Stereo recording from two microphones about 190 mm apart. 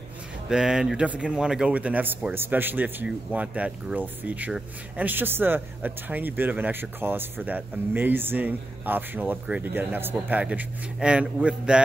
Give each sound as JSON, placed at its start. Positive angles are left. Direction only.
{"t": 0.5, "sound": "speech", "side_deg": -5}